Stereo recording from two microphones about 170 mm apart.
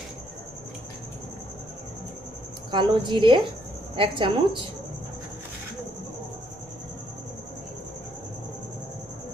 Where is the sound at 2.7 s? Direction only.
25° right (ahead or behind).